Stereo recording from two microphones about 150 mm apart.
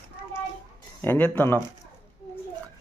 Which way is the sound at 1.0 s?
10° left (ahead or behind).